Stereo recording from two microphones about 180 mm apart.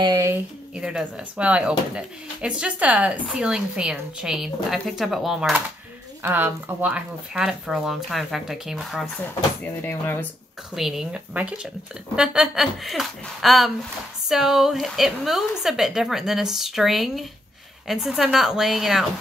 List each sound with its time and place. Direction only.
0.0 s a sound: 20° right (ahead or behind)
0.7 s speech: 5° right (ahead or behind)
10.7 s speech: centre (ahead or behind)